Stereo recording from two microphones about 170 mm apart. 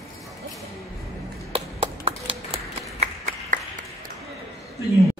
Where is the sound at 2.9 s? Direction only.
45° right (ahead or behind).